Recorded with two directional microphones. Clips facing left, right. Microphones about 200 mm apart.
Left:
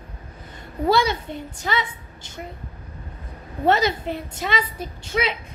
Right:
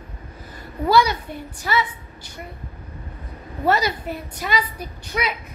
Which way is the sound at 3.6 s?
25° left (ahead or behind).